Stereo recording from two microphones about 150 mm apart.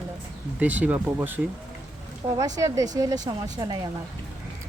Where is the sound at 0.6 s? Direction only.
10° right (ahead or behind).